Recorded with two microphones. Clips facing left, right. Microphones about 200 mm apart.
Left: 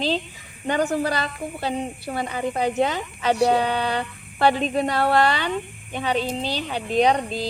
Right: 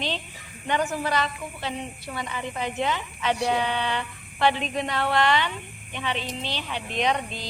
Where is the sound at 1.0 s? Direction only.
35° left (ahead or behind).